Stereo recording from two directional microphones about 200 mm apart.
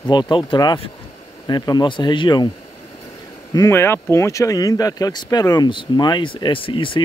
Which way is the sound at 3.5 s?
15° left (ahead or behind).